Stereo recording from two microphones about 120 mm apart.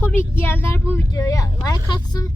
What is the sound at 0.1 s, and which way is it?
Speech, 15° left (ahead or behind).